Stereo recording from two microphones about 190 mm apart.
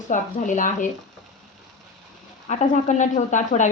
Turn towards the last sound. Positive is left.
turn(degrees=40)  # may be behind; listen again after turning